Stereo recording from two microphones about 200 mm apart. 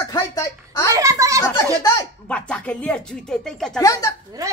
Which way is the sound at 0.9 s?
15° right (ahead or behind).